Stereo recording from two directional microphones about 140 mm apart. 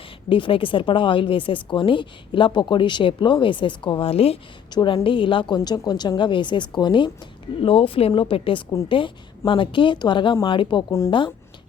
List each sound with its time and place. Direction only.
0.3 s speech: 35° left (ahead or behind)
4.7 s speech: 30° left (ahead or behind)